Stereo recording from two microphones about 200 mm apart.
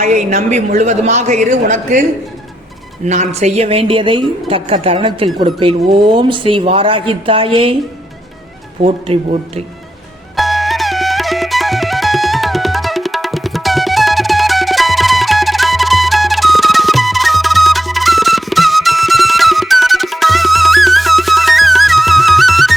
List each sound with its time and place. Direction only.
0.0 s a woman's voice: 35° right (ahead or behind)
3.1 s speech: 35° right (ahead or behind)
8.8 s speech: 30° right (ahead or behind)
10.3 s music: centre (ahead or behind)